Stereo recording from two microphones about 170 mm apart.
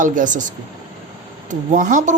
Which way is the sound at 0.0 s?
50° right (ahead or behind).